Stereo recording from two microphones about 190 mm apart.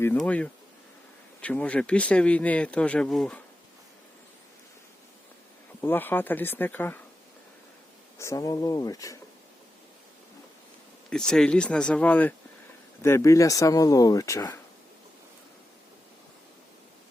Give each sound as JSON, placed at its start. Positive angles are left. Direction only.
{"t": 0.2, "sound": "speech", "side_deg": 5}
{"t": 5.8, "sound": "speech", "side_deg": 10}
{"t": 8.2, "sound": "speech", "side_deg": 15}
{"t": 11.1, "sound": "speech", "side_deg": 0}